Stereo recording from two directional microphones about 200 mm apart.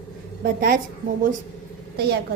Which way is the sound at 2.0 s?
55° right (ahead or behind).